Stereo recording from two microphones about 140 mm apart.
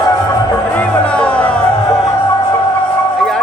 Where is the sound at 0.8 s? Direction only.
10° left (ahead or behind).